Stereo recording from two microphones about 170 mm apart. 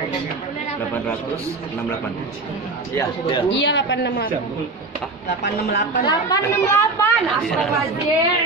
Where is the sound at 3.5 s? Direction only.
90° left.